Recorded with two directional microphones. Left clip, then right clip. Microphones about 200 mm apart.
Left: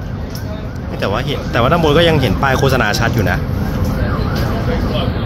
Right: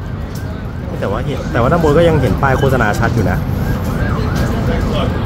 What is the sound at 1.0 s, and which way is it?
Speech, 10° left (ahead or behind).